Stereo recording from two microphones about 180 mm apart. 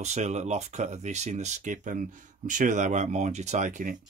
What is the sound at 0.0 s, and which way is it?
Speech, 40° right (ahead or behind).